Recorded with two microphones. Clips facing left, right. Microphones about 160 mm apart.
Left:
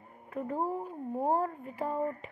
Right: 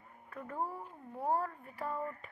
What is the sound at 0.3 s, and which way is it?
Speech, 30° left (ahead or behind).